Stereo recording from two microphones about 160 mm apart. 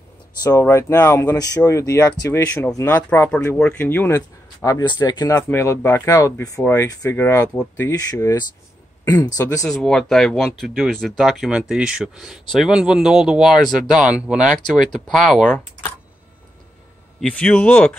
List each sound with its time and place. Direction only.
0.4 s speech: 20° left (ahead or behind)
4.6 s speech: 25° left (ahead or behind)
5.5 s speech: 15° left (ahead or behind)
7.9 s speech: 20° left (ahead or behind)
9.7 s speech: 5° left (ahead or behind)
17.2 s speech: 5° left (ahead or behind)